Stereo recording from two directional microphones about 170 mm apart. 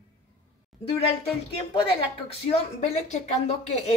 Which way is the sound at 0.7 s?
Centre (ahead or behind).